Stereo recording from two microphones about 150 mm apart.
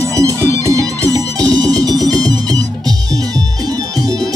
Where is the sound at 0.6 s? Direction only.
20° right (ahead or behind).